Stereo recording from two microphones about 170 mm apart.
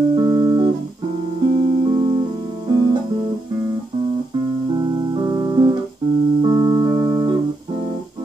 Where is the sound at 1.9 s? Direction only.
30° right (ahead or behind).